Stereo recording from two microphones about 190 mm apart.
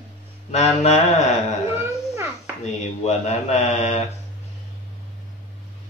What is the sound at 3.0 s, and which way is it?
A man's voice, 35° left (ahead or behind).